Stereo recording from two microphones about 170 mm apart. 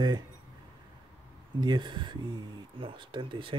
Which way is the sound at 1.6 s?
25° right (ahead or behind).